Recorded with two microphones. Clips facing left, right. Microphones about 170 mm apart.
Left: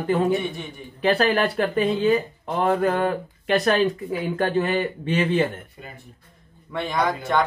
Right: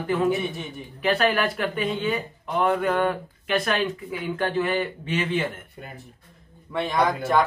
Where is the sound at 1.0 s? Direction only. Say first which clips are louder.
Left 2 dB; 35° left (ahead or behind).